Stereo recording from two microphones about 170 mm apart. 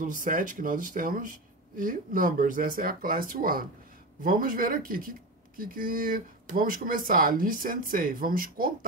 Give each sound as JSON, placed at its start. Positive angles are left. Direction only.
{"t": 0.0, "sound": "speech", "side_deg": -50}